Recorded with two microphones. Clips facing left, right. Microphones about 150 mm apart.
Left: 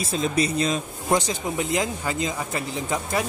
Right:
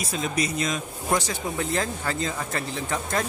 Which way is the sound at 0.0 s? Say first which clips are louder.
Left 4 dB; 30° left (ahead or behind).